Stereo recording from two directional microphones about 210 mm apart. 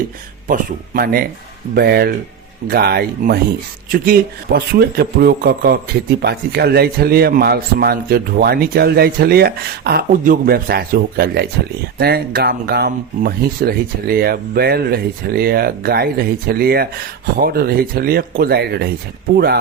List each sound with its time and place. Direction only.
0.4 s a man's voice: 45° right (ahead or behind)